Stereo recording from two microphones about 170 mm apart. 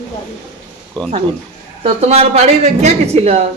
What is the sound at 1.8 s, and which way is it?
A woman's voice, 40° right (ahead or behind).